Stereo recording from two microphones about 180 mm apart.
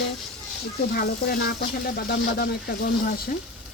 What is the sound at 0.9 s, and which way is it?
A woman's voice, 60° left (ahead or behind).